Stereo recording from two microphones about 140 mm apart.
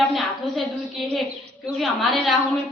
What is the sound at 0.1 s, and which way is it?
Speech, centre (ahead or behind).